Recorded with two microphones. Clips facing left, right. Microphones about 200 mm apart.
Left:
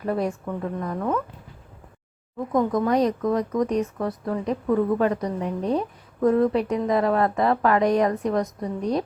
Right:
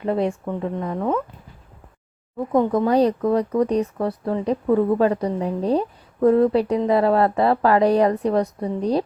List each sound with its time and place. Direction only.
0.0 s speech: 25° right (ahead or behind)
2.5 s speech: 30° right (ahead or behind)